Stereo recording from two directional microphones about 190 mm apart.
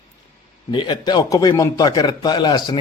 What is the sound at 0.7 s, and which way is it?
A man's voice, 25° left (ahead or behind).